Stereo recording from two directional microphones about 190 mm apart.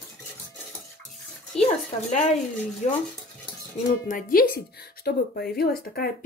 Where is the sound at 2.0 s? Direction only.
40° left (ahead or behind).